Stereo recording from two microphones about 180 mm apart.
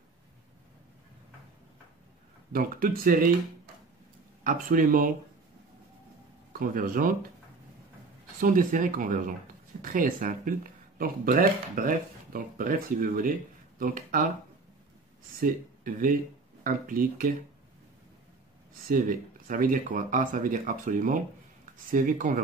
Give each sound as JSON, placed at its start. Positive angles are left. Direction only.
{"t": 2.5, "sound": "speech", "side_deg": -55}
{"t": 4.5, "sound": "speech", "side_deg": -50}
{"t": 6.6, "sound": "speech", "side_deg": -50}
{"t": 8.4, "sound": "speech", "side_deg": -50}
{"t": 15.4, "sound": "speech", "side_deg": -50}
{"t": 18.9, "sound": "speech", "side_deg": -50}